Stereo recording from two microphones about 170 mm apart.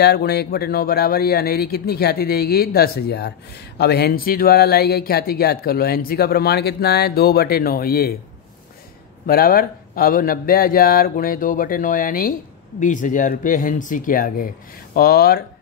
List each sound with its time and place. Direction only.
0.0 s speech: 70° left (ahead or behind)
9.2 s speech: 60° left (ahead or behind)